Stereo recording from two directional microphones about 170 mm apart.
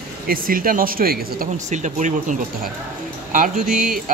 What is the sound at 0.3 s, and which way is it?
Speech, 55° right (ahead or behind).